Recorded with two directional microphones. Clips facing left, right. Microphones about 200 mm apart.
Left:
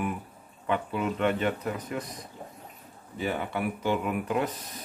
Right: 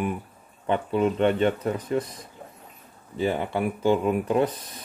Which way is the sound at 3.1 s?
30° right (ahead or behind).